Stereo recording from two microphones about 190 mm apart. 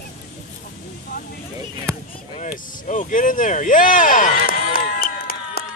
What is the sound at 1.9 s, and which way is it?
Basketball bounce, 15° right (ahead or behind).